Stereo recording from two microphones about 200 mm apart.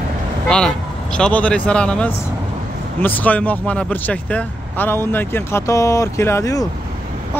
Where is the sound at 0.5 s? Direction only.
5° left (ahead or behind).